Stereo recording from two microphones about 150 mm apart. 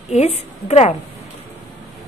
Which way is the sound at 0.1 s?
45° left (ahead or behind).